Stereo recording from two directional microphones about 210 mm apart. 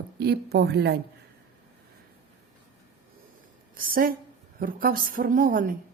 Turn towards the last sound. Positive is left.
turn(degrees=-40)  # may be behind; listen again after turning